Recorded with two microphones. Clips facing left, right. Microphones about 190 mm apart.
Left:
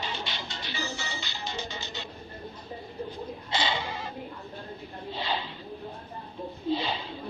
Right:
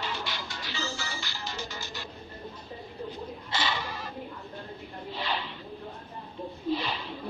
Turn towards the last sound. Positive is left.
turn(degrees=25)  # may be behind; listen again after turning